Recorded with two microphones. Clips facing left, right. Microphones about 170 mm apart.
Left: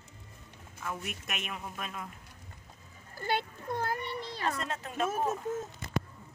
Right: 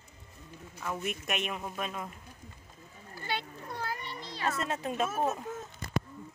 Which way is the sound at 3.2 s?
50° left (ahead or behind).